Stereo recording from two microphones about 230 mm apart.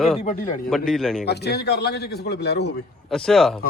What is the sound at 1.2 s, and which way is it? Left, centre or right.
A man's voice, left.